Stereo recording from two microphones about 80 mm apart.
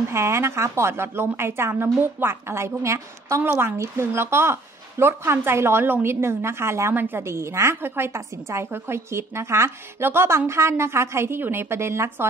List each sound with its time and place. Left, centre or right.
0.1 s a woman's voice: right